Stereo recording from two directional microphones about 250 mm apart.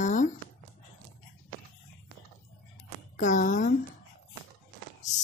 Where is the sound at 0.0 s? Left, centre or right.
Left.